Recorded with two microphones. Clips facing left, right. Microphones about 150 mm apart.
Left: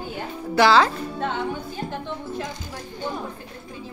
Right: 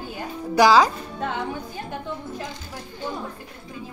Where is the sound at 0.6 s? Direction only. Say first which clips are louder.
Right 1 dB; 10° right (ahead or behind).